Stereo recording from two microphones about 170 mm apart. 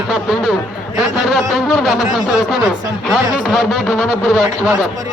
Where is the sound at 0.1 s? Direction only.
Centre (ahead or behind).